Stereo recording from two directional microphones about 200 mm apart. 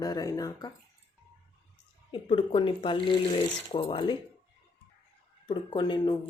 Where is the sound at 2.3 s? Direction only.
25° left (ahead or behind).